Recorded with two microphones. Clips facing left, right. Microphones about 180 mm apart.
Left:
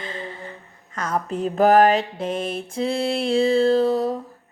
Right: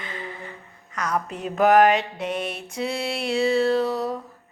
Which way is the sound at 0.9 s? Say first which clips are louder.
Left 2 dB; 30° left (ahead or behind).